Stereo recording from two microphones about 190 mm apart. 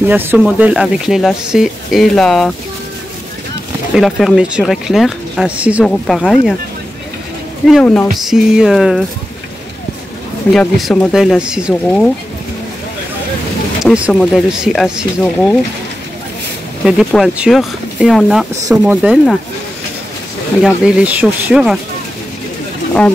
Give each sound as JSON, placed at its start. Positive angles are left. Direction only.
{"t": 0.1, "sound": "speech", "side_deg": -10}
{"t": 3.9, "sound": "speech", "side_deg": 0}
{"t": 7.6, "sound": "speech", "side_deg": 5}
{"t": 10.5, "sound": "speech", "side_deg": 0}
{"t": 13.8, "sound": "speech", "side_deg": -5}
{"t": 16.8, "sound": "speech", "side_deg": 0}
{"t": 20.6, "sound": "speech", "side_deg": -5}